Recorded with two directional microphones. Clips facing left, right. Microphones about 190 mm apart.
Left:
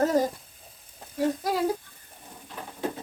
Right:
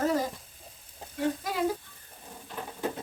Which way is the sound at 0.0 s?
40° left (ahead or behind).